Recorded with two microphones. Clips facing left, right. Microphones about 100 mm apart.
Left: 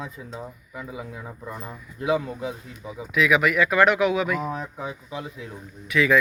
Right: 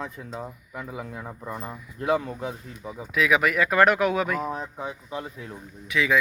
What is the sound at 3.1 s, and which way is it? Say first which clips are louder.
Speech: left 2 dB; 35° right (ahead or behind).